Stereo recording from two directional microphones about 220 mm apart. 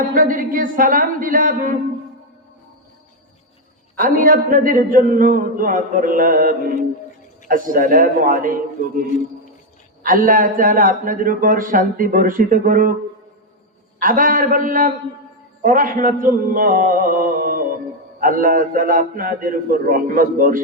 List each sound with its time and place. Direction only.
0.1 s speech: 40° right (ahead or behind)
3.9 s speech: 40° right (ahead or behind)
10.0 s speech: 40° right (ahead or behind)
14.0 s speech: 40° right (ahead or behind)